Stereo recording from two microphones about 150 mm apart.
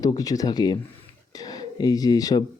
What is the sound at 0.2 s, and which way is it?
Speech, 25° left (ahead or behind).